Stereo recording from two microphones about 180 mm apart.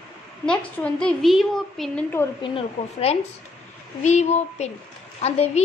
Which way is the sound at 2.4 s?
35° left (ahead or behind).